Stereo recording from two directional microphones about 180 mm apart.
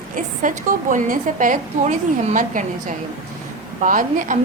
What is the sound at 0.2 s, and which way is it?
A woman's voice, 45° right (ahead or behind).